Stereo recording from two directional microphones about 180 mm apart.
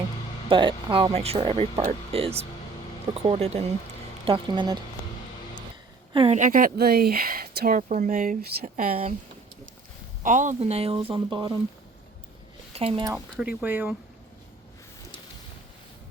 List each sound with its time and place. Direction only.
0.4 s speech: 30° right (ahead or behind)
6.1 s speech: 35° right (ahead or behind)
10.2 s speech: 45° right (ahead or behind); by 11.5 s 25° right (ahead or behind)
12.7 s speech: 30° right (ahead or behind)
13.4 s speech: 10° right (ahead or behind)